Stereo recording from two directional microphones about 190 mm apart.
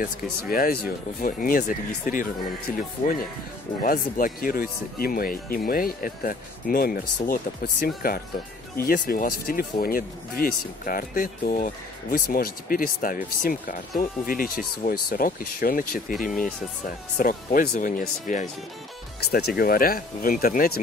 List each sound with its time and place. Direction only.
0.0 s speech: 50° left (ahead or behind)
16.3 s speech: 5° left (ahead or behind)
16.8 s speech: 45° left (ahead or behind)
19.3 s speech: 55° left (ahead or behind)